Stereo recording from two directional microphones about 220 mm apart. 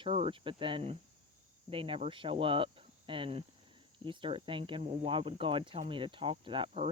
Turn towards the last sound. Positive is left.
turn(degrees=-25)  # may be behind; listen again after turning